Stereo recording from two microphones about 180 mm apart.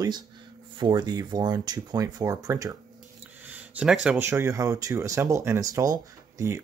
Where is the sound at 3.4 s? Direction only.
10° right (ahead or behind).